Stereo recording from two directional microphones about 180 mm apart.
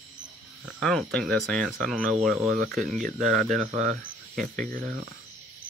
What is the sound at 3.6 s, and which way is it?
Speech, 40° right (ahead or behind).